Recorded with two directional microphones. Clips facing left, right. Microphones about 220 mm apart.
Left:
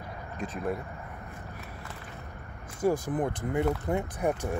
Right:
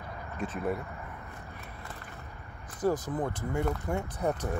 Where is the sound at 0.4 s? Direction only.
5° right (ahead or behind).